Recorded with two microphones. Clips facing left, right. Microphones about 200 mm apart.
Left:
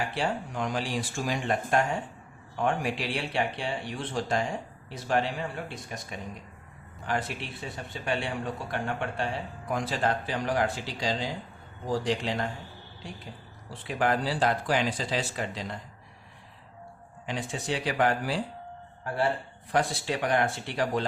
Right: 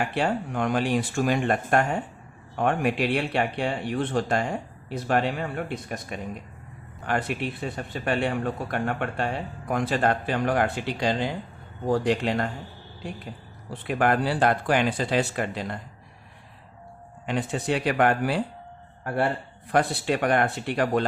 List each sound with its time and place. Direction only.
0.0 s a man's voice: 60° right (ahead or behind)
13.8 s a man's voice: 60° right (ahead or behind)
17.2 s a man's voice: 60° right (ahead or behind)